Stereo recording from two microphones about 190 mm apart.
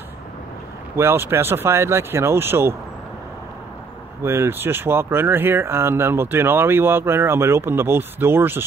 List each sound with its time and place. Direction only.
0.9 s speech: 10° right (ahead or behind)
4.2 s speech: 10° right (ahead or behind)